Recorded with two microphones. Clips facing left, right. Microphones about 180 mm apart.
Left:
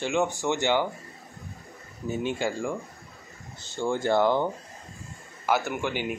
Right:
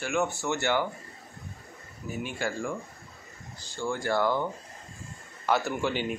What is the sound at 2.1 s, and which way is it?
Speech, 25° left (ahead or behind).